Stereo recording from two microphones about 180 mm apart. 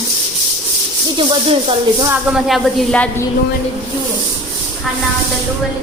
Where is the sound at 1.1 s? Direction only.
30° right (ahead or behind).